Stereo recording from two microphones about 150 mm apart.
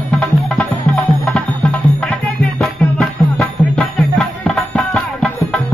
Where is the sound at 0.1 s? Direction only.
5° left (ahead or behind).